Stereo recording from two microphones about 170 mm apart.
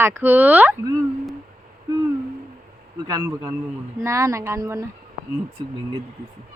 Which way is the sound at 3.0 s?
20° right (ahead or behind).